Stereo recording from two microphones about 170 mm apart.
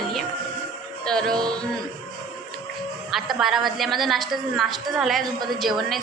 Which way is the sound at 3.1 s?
Centre (ahead or behind).